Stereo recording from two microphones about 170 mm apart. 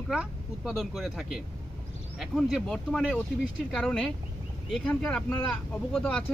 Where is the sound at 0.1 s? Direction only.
5° right (ahead or behind).